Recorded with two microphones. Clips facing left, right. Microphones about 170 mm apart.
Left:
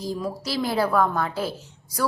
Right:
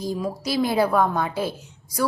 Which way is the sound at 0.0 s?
20° right (ahead or behind).